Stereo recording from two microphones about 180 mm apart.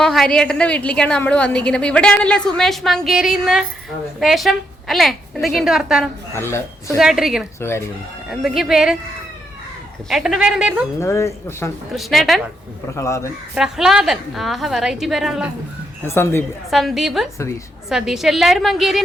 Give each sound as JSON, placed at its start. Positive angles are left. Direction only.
{"t": 0.0, "sound": "a woman's voice", "side_deg": 0}
{"t": 6.3, "sound": "speech", "side_deg": 15}
{"t": 7.0, "sound": "a woman's voice", "side_deg": 0}
{"t": 7.6, "sound": "speech", "side_deg": 15}
{"t": 8.3, "sound": "a woman's voice", "side_deg": 0}
{"t": 10.1, "sound": "a woman's voice", "side_deg": 0}
{"t": 11.0, "sound": "speech", "side_deg": 15}
{"t": 11.9, "sound": "a woman's voice", "side_deg": 0}
{"t": 13.0, "sound": "speech", "side_deg": 15}
{"t": 13.5, "sound": "a woman's voice", "side_deg": -5}
{"t": 16.0, "sound": "speech", "side_deg": 15}
{"t": 16.6, "sound": "a woman's voice", "side_deg": 0}